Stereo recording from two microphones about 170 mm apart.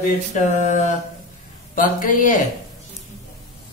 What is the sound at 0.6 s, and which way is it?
Speech, 45° left (ahead or behind).